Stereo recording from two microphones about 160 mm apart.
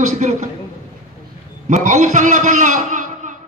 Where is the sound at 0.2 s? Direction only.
45° right (ahead or behind).